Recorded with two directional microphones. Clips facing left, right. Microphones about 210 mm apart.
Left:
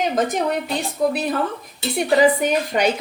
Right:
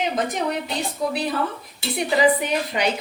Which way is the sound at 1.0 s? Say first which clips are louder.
Left 6 dB; 55° left (ahead or behind).